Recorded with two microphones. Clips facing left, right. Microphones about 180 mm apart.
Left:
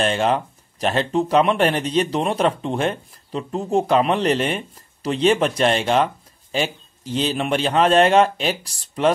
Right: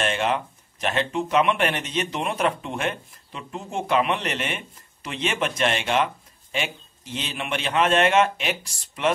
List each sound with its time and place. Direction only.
0.0 s speech: 35° left (ahead or behind)